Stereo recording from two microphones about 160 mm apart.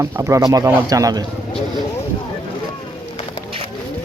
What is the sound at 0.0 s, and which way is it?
Speech, 20° right (ahead or behind).